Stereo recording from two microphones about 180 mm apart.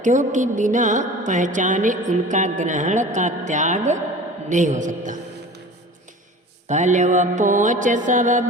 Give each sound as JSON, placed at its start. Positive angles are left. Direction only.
{"t": 0.0, "sound": "a woman's voice", "side_deg": -45}
{"t": 6.7, "sound": "a woman's voice", "side_deg": -40}